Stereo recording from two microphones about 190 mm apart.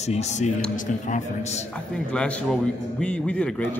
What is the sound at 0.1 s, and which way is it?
Speech, 35° left (ahead or behind).